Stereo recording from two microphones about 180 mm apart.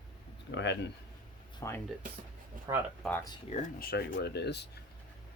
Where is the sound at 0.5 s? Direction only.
80° left.